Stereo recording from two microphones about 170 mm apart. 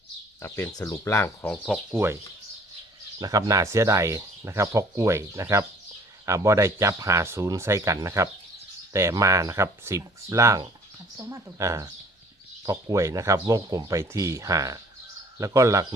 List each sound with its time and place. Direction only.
0.4 s speech: 15° left (ahead or behind)
1.6 s speech: centre (ahead or behind)
3.2 s speech: 25° right (ahead or behind)